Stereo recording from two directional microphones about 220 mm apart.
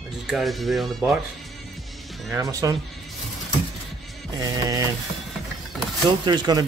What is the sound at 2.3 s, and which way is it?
Speech, 15° right (ahead or behind).